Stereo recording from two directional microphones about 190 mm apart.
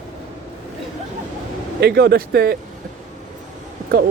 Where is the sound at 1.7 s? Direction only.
60° right (ahead or behind).